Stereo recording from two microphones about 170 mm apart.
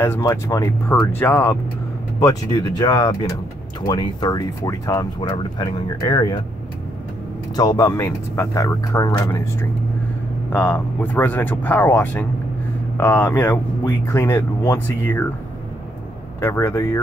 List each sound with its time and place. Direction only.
0.0 s speech: 15° left (ahead or behind)
7.5 s speech: 20° left (ahead or behind)
16.3 s speech: 15° left (ahead or behind)